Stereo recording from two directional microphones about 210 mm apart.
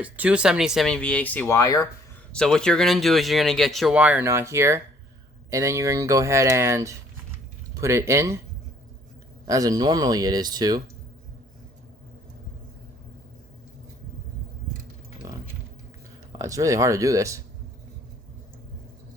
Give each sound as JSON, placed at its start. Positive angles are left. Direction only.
{"t": 0.0, "sound": "speech", "side_deg": -5}
{"t": 2.3, "sound": "speech", "side_deg": 5}
{"t": 9.5, "sound": "speech", "side_deg": -15}
{"t": 15.2, "sound": "a sound", "side_deg": -15}
{"t": 16.4, "sound": "speech", "side_deg": -15}